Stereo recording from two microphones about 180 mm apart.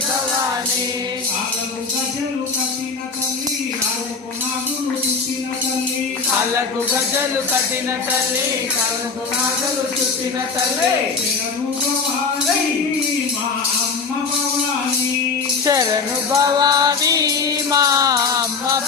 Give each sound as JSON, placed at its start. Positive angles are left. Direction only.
{"t": 16.3, "sound": "music", "side_deg": -20}